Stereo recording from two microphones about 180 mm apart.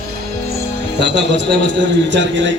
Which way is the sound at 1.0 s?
75° right (ahead or behind).